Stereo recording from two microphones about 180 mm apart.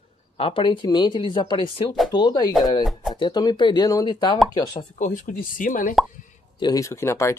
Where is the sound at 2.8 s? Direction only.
Centre (ahead or behind).